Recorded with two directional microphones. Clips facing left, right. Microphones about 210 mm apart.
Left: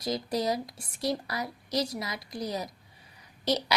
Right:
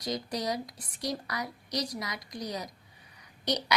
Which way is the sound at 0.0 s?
25° left (ahead or behind).